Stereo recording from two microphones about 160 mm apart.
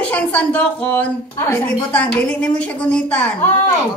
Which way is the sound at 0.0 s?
10° left (ahead or behind).